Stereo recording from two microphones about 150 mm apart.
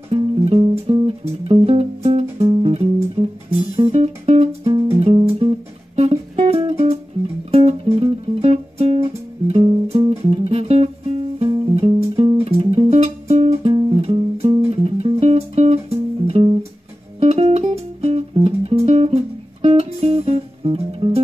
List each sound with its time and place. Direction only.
0.1 s music: 40° right (ahead or behind)